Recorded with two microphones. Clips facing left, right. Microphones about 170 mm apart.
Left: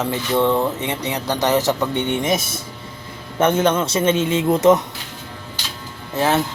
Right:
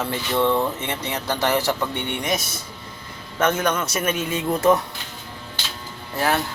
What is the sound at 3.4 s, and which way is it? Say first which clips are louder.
A man's voice: left 5 dB; 30° left (ahead or behind).